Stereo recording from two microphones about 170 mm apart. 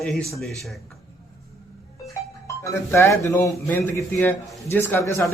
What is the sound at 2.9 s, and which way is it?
A man's voice, 15° left (ahead or behind).